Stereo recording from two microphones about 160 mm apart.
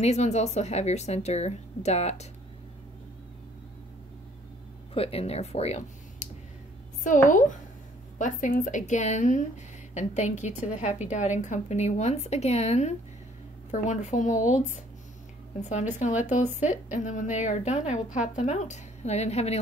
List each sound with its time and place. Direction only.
0.0 s a woman's voice: 45° left (ahead or behind)
4.9 s a woman's voice: 40° left (ahead or behind)